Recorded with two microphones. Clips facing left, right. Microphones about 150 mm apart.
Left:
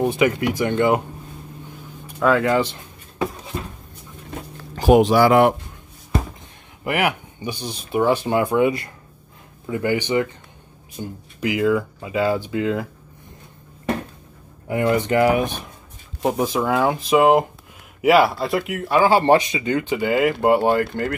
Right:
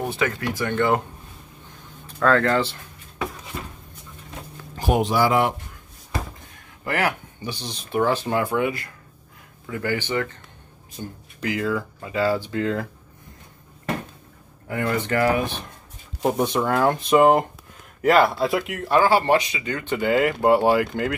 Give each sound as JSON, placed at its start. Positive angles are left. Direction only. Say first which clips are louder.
{"t": 0.0, "sound": "speech", "louder": "left 6 dB", "side_deg": 20}
{"t": 2.0, "sound": "speech", "louder": "left 1 dB", "side_deg": 10}
{"t": 4.7, "sound": "speech", "louder": "left 7 dB", "side_deg": 90}
{"t": 6.8, "sound": "speech", "louder": "left 3 dB", "side_deg": 15}
{"t": 14.7, "sound": "speech", "louder": "left 5 dB", "side_deg": 15}
{"t": 16.2, "sound": "speech", "louder": "left 1 dB", "side_deg": 0}
{"t": 19.0, "sound": "speech", "louder": "left 3 dB", "side_deg": 25}
{"t": 19.8, "sound": "speech", "louder": "right 1 dB", "side_deg": 5}